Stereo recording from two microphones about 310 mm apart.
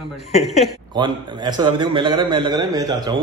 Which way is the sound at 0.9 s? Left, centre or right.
Centre.